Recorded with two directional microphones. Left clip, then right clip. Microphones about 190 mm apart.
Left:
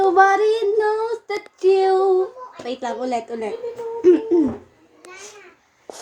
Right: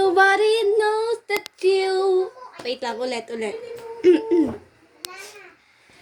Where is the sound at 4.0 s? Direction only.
15° right (ahead or behind).